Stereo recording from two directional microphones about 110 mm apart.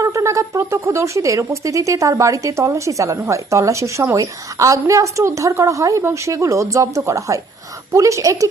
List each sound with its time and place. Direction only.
0.0 s a woman's voice: 30° right (ahead or behind)